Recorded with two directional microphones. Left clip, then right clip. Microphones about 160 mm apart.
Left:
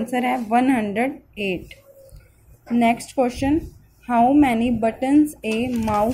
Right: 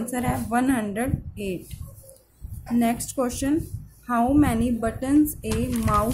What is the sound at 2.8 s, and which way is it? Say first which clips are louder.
Speech: left 6 dB; 10° left (ahead or behind).